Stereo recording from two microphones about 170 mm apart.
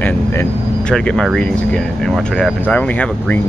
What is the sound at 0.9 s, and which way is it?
Speech, 5° left (ahead or behind).